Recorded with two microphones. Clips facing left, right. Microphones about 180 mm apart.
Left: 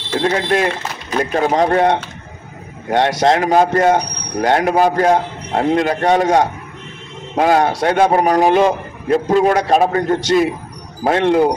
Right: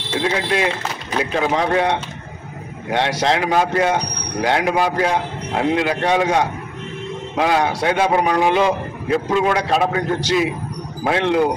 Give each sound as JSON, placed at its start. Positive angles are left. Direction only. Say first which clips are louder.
{"t": 0.2, "sound": "speech", "louder": "left 3 dB", "side_deg": 45}